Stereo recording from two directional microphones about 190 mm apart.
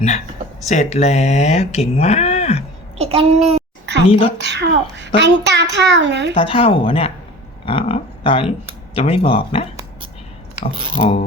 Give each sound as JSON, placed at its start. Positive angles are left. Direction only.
{"t": 0.6, "sound": "speech", "side_deg": 35}
{"t": 3.0, "sound": "a child's voice", "side_deg": -30}
{"t": 4.4, "sound": "a child's voice", "side_deg": -65}
{"t": 6.4, "sound": "speech", "side_deg": 30}
{"t": 11.0, "sound": "speech", "side_deg": 35}